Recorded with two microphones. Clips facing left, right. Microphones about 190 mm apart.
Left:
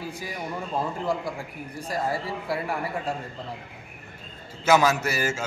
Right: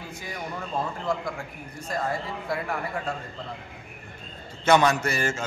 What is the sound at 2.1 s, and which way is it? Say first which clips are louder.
A man's voice: left 1 dB; 35° left (ahead or behind).